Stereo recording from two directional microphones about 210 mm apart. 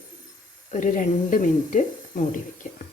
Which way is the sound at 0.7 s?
35° left (ahead or behind).